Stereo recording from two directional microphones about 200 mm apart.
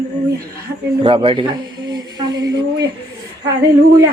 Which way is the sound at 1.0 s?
25° right (ahead or behind).